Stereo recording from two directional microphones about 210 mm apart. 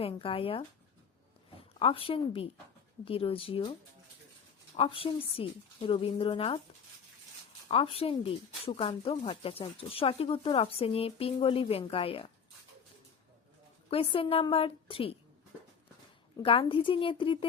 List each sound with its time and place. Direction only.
0.0 s speech: 25° left (ahead or behind)
4.8 s speech: 25° left (ahead or behind)
7.7 s speech: 25° left (ahead or behind)
13.9 s speech: 25° left (ahead or behind)
16.4 s speech: 25° left (ahead or behind)